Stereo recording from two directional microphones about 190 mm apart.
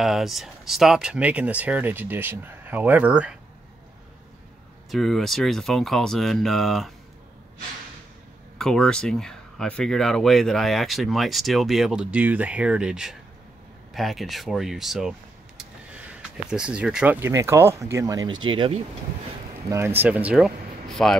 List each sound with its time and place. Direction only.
0.0 s speech: centre (ahead or behind)
4.9 s speech: centre (ahead or behind)
8.5 s speech: 5° left (ahead or behind); by 18.8 s 25° right (ahead or behind)
19.7 s speech: 10° right (ahead or behind)